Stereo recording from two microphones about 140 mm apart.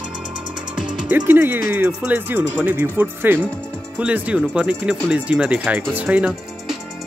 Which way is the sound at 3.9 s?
10° right (ahead or behind).